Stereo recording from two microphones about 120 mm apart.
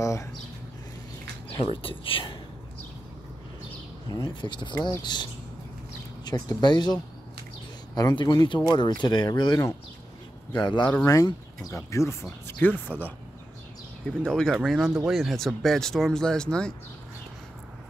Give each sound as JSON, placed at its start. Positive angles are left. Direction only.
{"t": 0.0, "sound": "speech", "side_deg": 25}
{"t": 1.6, "sound": "speech", "side_deg": 50}
{"t": 4.1, "sound": "speech", "side_deg": 40}
{"t": 14.0, "sound": "speech", "side_deg": 5}